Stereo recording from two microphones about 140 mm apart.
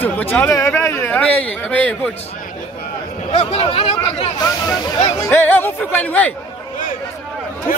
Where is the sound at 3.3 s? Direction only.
45° left (ahead or behind).